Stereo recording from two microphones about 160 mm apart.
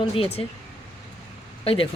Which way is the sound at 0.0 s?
35° left (ahead or behind).